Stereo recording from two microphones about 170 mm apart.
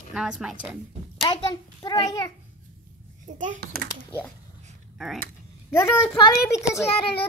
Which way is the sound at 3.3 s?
50° right (ahead or behind).